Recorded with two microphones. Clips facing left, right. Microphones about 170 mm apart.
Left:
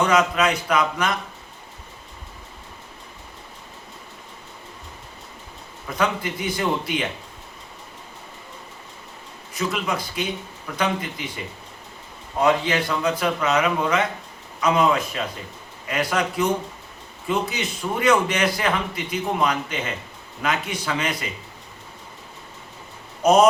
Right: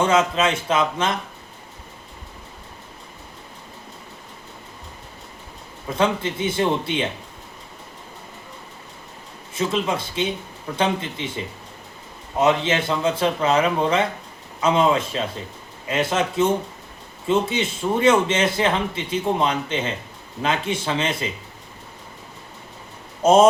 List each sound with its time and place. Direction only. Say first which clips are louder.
0.0 s speech: right 1 dB; 25° right (ahead or behind)
6.0 s speech: right 3 dB; 25° right (ahead or behind)
9.6 s speech: right 3 dB; 25° right (ahead or behind)
12.4 s speech: right 1 dB; 25° right (ahead or behind)
23.2 s speech: right 2 dB; 25° right (ahead or behind)